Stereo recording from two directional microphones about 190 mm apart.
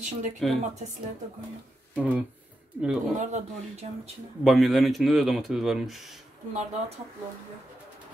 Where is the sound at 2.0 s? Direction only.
5° right (ahead or behind).